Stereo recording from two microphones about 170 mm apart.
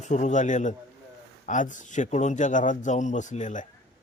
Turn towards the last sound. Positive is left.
turn(degrees=45)  # may be behind; listen again after turning